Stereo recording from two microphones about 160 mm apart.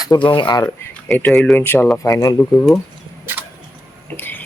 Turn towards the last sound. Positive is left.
turn(degrees=10)  # may be behind; listen again after turning